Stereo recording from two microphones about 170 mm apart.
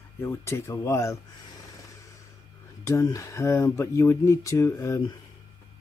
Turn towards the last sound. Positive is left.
turn(degrees=15)  # may be behind; listen again after turning